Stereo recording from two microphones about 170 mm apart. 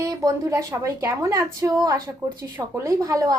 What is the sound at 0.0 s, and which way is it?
A woman's voice, 20° right (ahead or behind).